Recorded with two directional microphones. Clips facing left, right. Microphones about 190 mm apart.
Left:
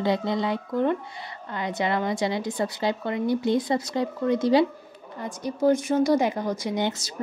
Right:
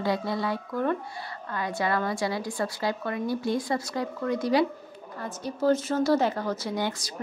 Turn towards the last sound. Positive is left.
turn(degrees=25)  # may be behind; listen again after turning